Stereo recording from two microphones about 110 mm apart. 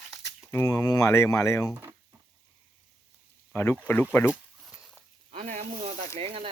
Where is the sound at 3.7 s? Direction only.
15° left (ahead or behind).